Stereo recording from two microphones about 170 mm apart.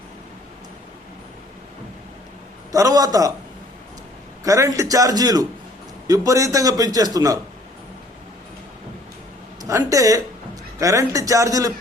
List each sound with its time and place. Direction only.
2.7 s a man's voice: 20° right (ahead or behind)
4.4 s a man's voice: 20° right (ahead or behind)
9.6 s a man's voice: 20° right (ahead or behind)